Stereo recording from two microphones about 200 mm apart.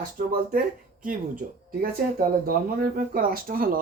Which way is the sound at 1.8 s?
45° right (ahead or behind).